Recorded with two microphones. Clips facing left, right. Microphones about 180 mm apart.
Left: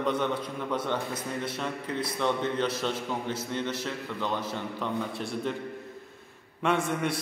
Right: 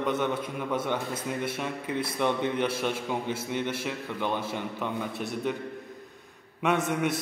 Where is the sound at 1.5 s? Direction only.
10° right (ahead or behind).